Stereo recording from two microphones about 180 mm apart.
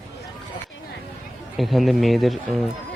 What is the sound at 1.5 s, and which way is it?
Speech, centre (ahead or behind).